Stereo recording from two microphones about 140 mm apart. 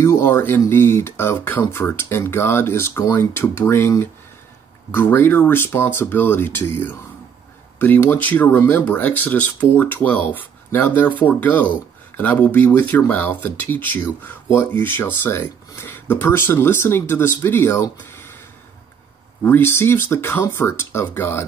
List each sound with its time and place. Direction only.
0.0 s speech: 15° left (ahead or behind)
19.4 s speech: 15° left (ahead or behind)